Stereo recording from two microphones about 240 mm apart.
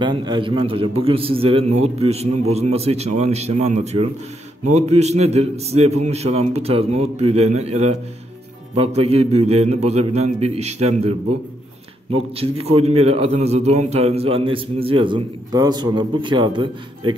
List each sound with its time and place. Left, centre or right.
0.0 s a man's voice: centre
12.4 s a man's voice: right